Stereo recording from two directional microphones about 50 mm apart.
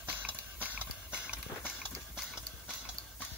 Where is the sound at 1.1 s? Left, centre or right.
Right.